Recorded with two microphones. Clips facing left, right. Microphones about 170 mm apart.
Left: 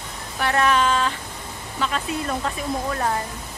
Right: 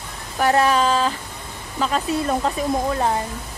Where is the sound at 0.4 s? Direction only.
35° right (ahead or behind).